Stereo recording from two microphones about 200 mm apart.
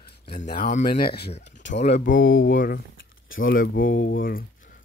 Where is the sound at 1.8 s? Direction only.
35° left (ahead or behind).